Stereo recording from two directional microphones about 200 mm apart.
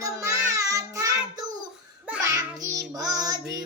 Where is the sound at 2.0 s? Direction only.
10° right (ahead or behind).